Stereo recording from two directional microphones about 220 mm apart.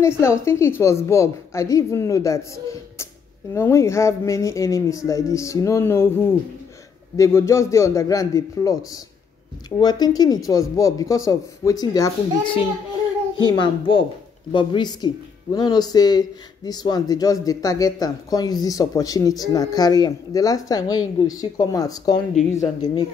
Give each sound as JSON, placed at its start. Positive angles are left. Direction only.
{"t": 0.0, "sound": "a child's voice", "side_deg": 10}